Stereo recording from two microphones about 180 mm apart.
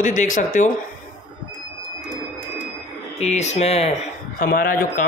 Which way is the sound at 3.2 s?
40° left (ahead or behind).